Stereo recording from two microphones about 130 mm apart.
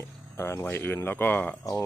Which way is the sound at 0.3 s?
20° left (ahead or behind).